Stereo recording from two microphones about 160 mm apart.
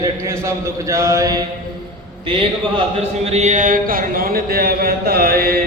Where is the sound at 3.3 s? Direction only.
45° right (ahead or behind); by 5.5 s 70° right (ahead or behind).